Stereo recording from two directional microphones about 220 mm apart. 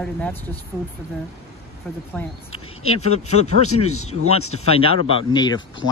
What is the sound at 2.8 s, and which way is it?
Speech, 90° left.